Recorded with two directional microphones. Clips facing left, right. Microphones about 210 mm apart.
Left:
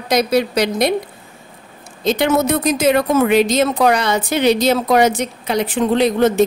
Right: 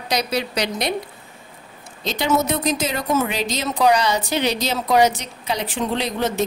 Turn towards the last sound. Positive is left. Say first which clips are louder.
# left 9 dB
turn(degrees=50)  # may be behind; listen again after turning